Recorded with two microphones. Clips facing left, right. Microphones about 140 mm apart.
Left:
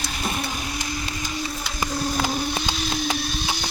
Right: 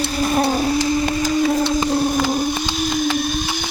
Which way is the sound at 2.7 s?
50° right (ahead or behind).